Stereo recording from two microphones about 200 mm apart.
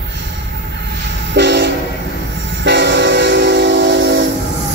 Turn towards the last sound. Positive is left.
turn(degrees=-65)  # may be behind; listen again after turning